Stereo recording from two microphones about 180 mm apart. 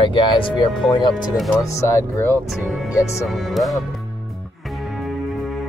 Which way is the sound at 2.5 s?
Centre (ahead or behind).